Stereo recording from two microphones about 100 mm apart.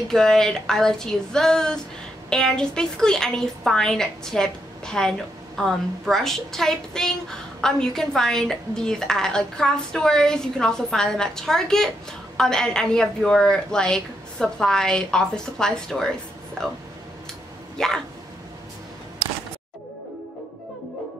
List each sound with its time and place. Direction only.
0.1 s a woman's voice: 5° left (ahead or behind)
17.7 s a woman's voice: 5° left (ahead or behind)